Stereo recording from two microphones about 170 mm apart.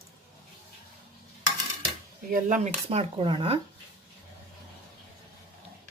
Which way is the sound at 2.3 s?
50° right (ahead or behind).